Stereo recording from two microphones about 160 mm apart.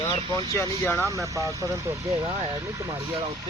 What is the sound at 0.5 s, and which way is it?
Speech, 15° left (ahead or behind).